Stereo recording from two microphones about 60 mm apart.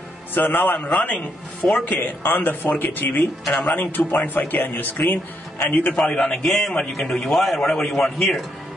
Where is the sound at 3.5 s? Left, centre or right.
Centre.